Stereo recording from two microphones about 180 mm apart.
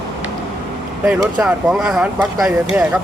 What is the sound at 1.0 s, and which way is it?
Speech, 5° right (ahead or behind).